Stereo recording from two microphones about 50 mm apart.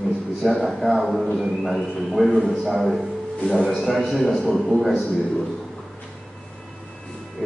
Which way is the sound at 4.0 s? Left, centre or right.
Centre.